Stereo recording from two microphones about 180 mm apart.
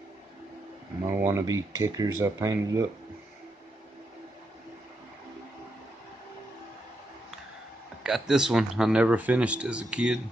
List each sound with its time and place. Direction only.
1.0 s speech: 15° right (ahead or behind)
8.0 s speech: 5° right (ahead or behind)